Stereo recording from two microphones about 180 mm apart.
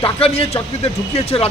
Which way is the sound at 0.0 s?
35° left (ahead or behind).